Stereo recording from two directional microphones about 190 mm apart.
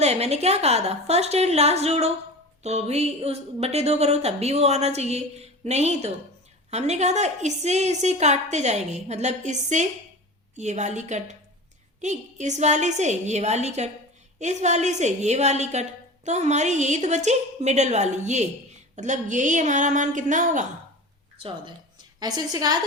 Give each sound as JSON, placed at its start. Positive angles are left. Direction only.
{"t": 0.0, "sound": "a woman's voice", "side_deg": -35}
{"t": 21.4, "sound": "a woman's voice", "side_deg": -25}